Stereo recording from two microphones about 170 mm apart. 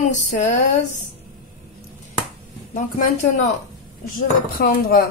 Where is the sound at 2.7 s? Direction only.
45° left (ahead or behind).